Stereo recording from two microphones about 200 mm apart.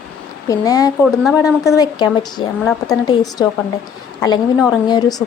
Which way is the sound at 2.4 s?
25° left (ahead or behind).